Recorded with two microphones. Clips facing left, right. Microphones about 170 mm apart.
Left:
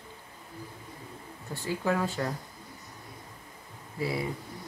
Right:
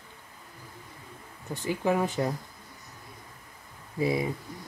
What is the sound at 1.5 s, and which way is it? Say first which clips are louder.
Speech: right 3 dB; 20° right (ahead or behind).